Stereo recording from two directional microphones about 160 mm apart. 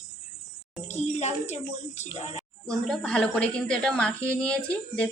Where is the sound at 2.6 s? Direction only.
5° left (ahead or behind).